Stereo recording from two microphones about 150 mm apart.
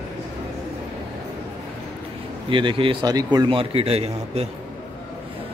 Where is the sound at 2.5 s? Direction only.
35° right (ahead or behind).